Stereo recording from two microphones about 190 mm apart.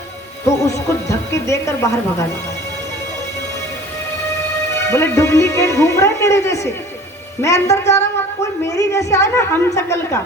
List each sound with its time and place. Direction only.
0.4 s speech: 15° left (ahead or behind)
4.9 s speech: 15° left (ahead or behind)